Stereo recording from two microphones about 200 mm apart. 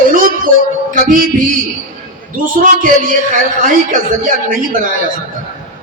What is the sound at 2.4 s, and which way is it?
A man's voice, 45° right (ahead or behind).